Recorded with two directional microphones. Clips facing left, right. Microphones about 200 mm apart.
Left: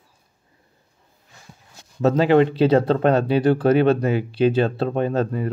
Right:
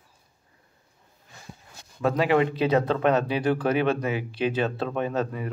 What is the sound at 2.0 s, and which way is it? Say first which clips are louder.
Speech: left 6 dB; 30° left (ahead or behind).